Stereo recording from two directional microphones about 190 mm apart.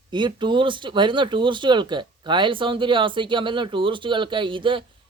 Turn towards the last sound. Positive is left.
turn(degrees=-25)  # may be behind; listen again after turning